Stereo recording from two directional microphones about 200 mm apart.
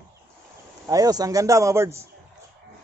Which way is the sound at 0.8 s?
15° right (ahead or behind).